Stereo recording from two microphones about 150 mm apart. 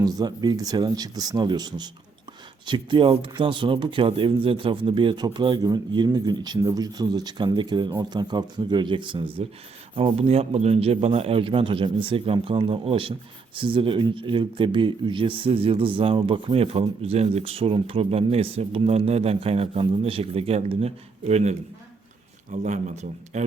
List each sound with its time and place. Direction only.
0.0 s speech: 25° right (ahead or behind); by 21.5 s 50° right (ahead or behind)
22.6 s a man's voice: 55° right (ahead or behind)